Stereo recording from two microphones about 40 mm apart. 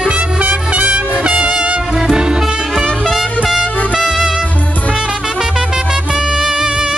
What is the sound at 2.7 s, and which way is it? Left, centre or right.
Music, centre.